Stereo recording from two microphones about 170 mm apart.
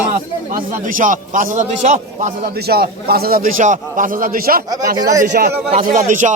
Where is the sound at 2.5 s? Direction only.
65° right (ahead or behind).